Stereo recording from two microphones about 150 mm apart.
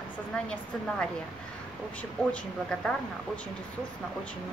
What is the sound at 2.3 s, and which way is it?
Speech, 5° left (ahead or behind).